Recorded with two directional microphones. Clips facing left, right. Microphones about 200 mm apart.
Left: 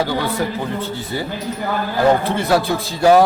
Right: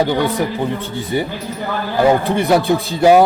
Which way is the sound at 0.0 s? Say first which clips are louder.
Right 4 dB; 20° right (ahead or behind).